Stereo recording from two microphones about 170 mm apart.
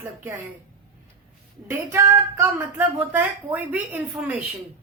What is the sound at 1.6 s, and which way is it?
Speech, 15° right (ahead or behind).